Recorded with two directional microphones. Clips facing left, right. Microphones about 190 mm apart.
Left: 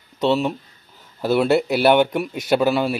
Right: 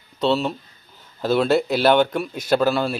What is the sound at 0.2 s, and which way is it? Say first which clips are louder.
A man's voice: left 1 dB; 15° left (ahead or behind).